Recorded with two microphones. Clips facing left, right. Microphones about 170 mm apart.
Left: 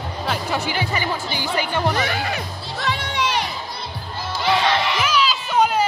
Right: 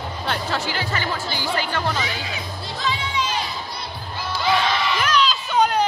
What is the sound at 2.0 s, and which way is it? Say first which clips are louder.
Music: left 5 dB; 60° left (ahead or behind).